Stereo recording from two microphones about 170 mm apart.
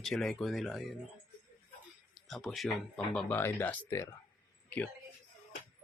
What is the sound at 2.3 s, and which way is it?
Speech, centre (ahead or behind).